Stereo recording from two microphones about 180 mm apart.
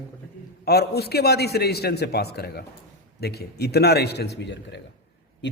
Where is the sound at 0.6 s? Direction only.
60° left (ahead or behind).